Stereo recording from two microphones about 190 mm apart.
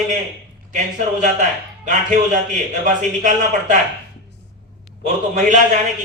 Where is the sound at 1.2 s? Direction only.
40° right (ahead or behind).